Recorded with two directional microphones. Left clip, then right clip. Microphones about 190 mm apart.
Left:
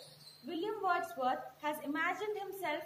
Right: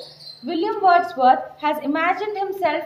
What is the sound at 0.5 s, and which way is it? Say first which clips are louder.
A woman's voice: right 18 dB; 45° right (ahead or behind).